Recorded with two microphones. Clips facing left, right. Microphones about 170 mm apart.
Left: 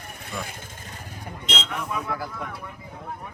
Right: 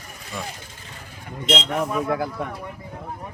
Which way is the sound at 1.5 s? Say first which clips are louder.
Right 8 dB; 45° right (ahead or behind).